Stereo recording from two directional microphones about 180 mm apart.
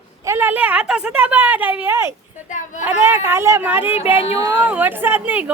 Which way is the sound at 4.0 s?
30° left (ahead or behind).